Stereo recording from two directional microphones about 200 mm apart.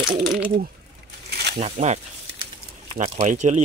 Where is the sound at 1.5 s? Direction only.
35° right (ahead or behind).